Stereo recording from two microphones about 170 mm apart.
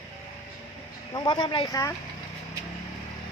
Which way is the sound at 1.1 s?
25° left (ahead or behind).